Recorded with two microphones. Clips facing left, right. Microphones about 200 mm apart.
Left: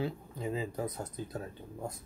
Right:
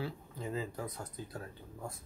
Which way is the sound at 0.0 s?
15° left (ahead or behind).